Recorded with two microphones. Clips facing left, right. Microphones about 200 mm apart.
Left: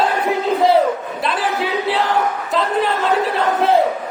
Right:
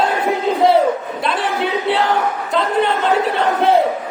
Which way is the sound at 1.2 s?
Centre (ahead or behind).